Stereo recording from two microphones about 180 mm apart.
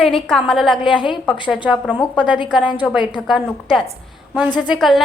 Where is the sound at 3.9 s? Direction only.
10° right (ahead or behind).